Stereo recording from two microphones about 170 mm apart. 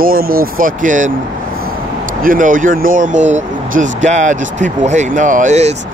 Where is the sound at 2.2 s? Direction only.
55° right (ahead or behind).